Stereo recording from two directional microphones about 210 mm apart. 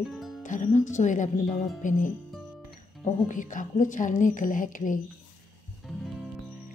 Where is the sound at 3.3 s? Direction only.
40° left (ahead or behind).